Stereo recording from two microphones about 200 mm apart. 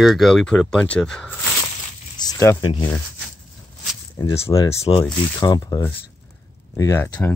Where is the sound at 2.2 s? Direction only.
15° left (ahead or behind).